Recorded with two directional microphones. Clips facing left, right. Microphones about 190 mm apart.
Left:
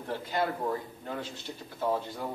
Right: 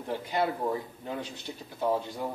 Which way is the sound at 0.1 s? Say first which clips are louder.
Right 2 dB; 15° right (ahead or behind).